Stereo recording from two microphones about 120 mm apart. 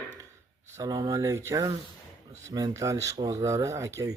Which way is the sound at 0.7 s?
30° right (ahead or behind).